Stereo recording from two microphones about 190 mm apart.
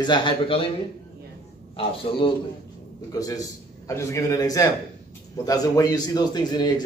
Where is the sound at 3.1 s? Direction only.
20° left (ahead or behind).